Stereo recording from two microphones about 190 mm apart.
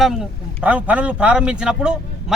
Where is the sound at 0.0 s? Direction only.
Centre (ahead or behind).